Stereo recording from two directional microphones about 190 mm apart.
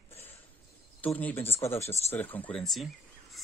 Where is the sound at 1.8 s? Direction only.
35° left (ahead or behind).